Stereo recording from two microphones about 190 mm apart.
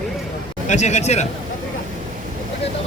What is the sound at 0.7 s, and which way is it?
Speech, 40° left (ahead or behind).